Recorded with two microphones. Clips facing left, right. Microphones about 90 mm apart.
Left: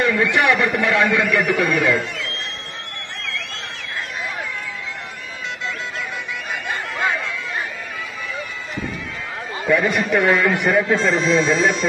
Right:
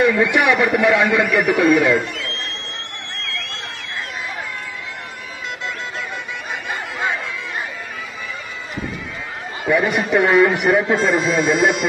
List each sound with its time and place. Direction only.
0.0 s a man's voice: 15° right (ahead or behind)
9.7 s a man's voice: 20° right (ahead or behind)